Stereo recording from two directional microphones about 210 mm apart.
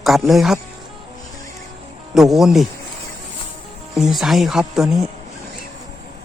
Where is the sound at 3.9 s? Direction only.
Centre (ahead or behind).